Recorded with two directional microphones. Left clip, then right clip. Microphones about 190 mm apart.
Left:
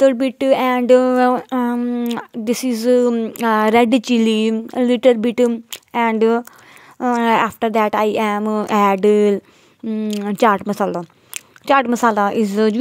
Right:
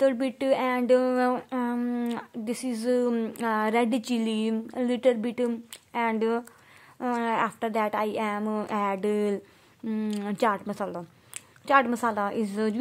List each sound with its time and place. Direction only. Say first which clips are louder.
0.0 s speech: left 10 dB; 40° left (ahead or behind)
3.4 s speech: left 12 dB; 45° left (ahead or behind)